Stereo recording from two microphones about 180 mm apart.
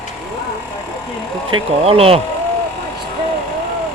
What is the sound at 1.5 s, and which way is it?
Speech, 30° right (ahead or behind).